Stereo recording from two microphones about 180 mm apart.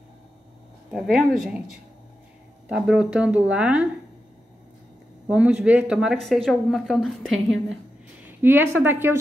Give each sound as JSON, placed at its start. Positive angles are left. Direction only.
{"t": 0.9, "sound": "speech", "side_deg": -5}
{"t": 5.3, "sound": "speech", "side_deg": -5}
{"t": 8.3, "sound": "speech", "side_deg": -10}